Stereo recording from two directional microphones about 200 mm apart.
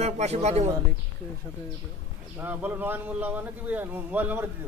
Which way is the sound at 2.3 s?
10° right (ahead or behind).